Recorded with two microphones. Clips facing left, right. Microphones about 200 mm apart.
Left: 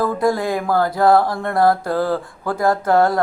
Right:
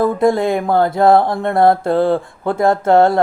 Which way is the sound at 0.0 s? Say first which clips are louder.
Right 4 dB; 25° right (ahead or behind).